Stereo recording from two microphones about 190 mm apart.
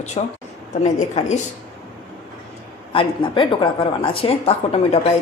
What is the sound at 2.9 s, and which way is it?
Speech, 25° left (ahead or behind).